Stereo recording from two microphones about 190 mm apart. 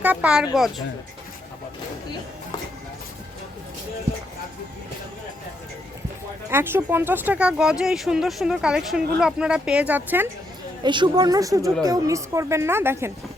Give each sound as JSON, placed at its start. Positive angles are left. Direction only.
{"t": 0.0, "sound": "speech", "side_deg": -10}
{"t": 6.5, "sound": "speech", "side_deg": -10}
{"t": 10.8, "sound": "speech", "side_deg": -25}